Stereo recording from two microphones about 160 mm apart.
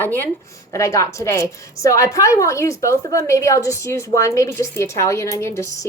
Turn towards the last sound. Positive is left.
turn(degrees=20)  # may be behind; listen again after turning